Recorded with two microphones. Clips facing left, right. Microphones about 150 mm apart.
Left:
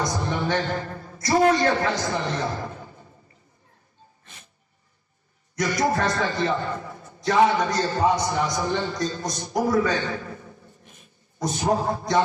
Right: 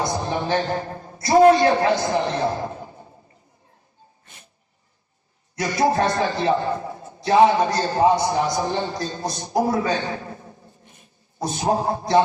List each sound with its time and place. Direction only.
0.0 s a man's voice: 25° right (ahead or behind)
5.5 s a man's voice: 30° right (ahead or behind)